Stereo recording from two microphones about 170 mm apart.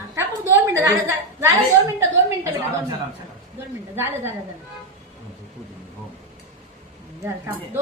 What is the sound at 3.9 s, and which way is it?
Speech, 15° right (ahead or behind).